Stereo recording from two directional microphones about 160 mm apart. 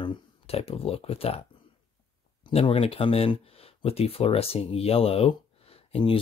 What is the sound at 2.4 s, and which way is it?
Speech, 30° left (ahead or behind).